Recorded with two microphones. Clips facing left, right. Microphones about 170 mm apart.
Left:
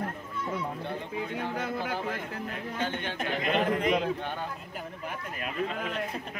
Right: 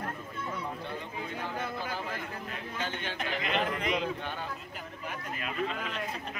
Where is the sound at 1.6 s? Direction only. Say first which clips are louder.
Left 3 dB; 60° left (ahead or behind).